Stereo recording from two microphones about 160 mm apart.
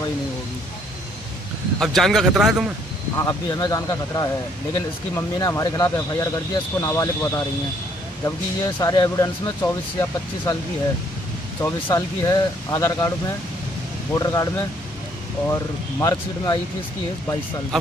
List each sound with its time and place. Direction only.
1.8 s speech: centre (ahead or behind)
3.2 s speech: 25° left (ahead or behind)
8.6 s speech: 20° left (ahead or behind)
11.6 s speech: 20° left (ahead or behind)
14.1 s speech: 20° left (ahead or behind)